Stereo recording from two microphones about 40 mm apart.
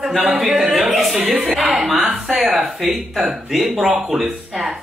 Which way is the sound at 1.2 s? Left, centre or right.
Centre.